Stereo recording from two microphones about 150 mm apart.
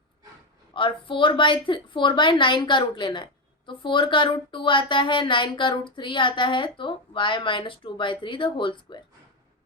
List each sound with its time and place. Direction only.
0.7 s speech: 35° left (ahead or behind)